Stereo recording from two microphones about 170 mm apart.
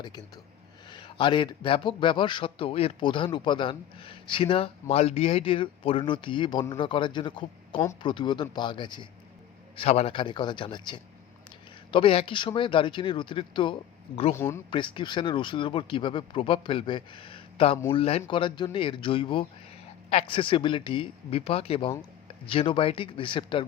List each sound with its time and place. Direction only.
0.9 s a man's voice: 25° left (ahead or behind)
14.3 s speech: 15° left (ahead or behind)
14.7 s a man's voice: 30° left (ahead or behind)